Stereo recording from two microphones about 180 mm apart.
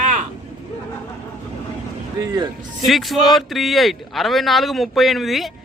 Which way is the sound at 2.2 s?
20° right (ahead or behind).